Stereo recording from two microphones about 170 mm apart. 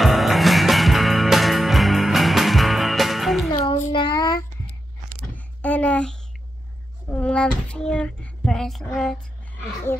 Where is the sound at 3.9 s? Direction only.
25° left (ahead or behind).